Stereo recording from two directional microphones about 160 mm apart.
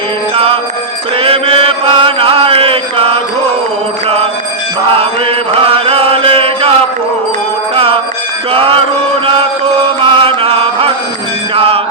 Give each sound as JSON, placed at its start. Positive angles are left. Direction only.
{"t": 0.3, "sound": "music", "side_deg": -35}
{"t": 1.2, "sound": "mantra", "side_deg": -35}
{"t": 4.9, "sound": "mantra", "side_deg": -35}
{"t": 8.5, "sound": "music", "side_deg": -35}
{"t": 10.2, "sound": "chant", "side_deg": -35}
{"t": 11.5, "sound": "music", "side_deg": -35}